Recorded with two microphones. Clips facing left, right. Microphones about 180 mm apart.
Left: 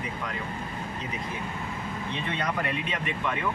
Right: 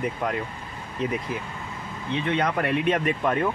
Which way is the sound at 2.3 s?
65° right (ahead or behind).